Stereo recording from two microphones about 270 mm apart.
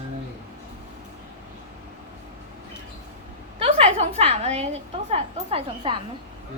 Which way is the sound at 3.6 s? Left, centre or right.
Right.